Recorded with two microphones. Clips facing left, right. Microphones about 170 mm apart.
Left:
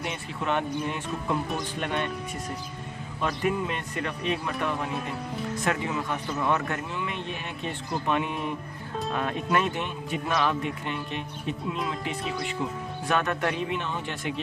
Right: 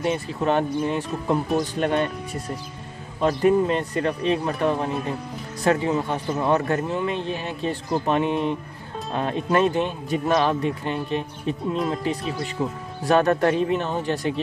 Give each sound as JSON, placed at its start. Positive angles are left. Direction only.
{"t": 0.0, "sound": "a man's voice", "side_deg": -40}
{"t": 3.2, "sound": "a man's voice", "side_deg": -35}